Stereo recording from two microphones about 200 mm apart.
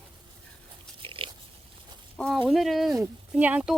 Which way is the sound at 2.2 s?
5° left (ahead or behind).